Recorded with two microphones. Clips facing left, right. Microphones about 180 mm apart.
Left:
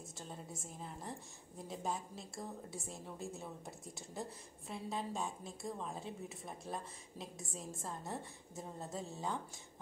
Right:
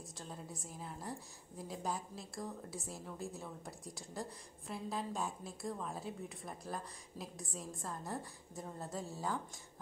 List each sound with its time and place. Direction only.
0.2 s a woman's voice: centre (ahead or behind)
9.1 s a woman's voice: 20° left (ahead or behind)